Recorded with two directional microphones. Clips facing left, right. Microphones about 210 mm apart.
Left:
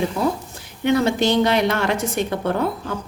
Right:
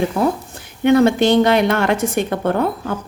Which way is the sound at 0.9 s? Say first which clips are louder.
Right 5 dB; 55° right (ahead or behind).